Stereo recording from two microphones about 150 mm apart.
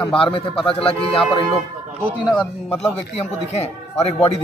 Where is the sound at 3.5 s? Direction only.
45° left (ahead or behind).